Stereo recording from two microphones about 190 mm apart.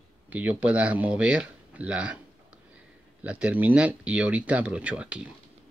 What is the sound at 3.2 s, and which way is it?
Speech, 5° right (ahead or behind).